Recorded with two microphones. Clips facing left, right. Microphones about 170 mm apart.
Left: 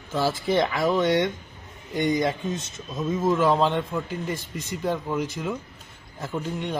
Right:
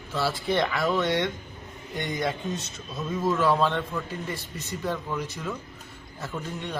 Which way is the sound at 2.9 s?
15° left (ahead or behind).